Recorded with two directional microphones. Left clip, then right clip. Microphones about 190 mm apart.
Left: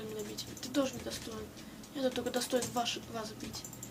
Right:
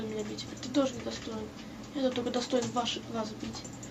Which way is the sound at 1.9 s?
20° left (ahead or behind).